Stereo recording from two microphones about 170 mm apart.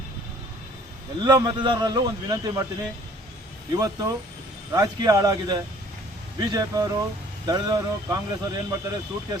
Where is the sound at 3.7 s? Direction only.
20° right (ahead or behind).